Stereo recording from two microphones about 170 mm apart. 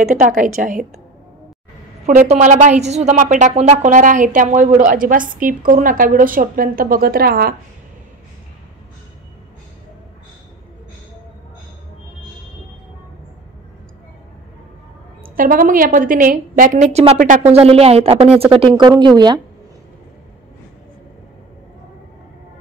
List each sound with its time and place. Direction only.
0.4 s a woman's voice: 50° right (ahead or behind)
2.0 s a woman's voice: 45° right (ahead or behind); by 7.5 s 60° right (ahead or behind)
15.2 s a woman's voice: 55° right (ahead or behind); by 19.4 s 25° right (ahead or behind)